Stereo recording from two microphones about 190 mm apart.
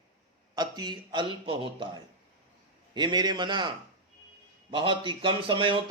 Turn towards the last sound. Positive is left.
turn(degrees=-25)  # may be behind; listen again after turning